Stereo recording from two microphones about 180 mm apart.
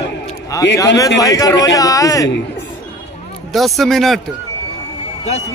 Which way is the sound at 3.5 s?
Centre (ahead or behind).